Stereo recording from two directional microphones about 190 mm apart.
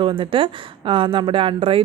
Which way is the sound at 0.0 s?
25° right (ahead or behind).